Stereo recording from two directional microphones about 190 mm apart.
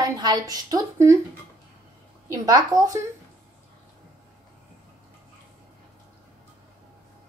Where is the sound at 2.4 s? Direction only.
20° right (ahead or behind).